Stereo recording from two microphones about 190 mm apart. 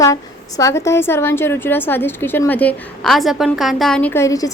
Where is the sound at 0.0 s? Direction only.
15° left (ahead or behind).